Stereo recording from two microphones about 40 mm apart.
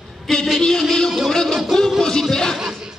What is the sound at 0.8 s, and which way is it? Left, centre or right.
Music, centre.